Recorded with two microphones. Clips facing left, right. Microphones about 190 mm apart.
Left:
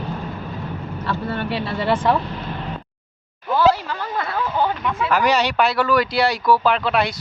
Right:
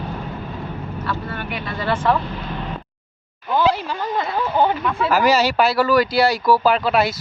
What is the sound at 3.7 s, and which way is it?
Speech, 15° right (ahead or behind).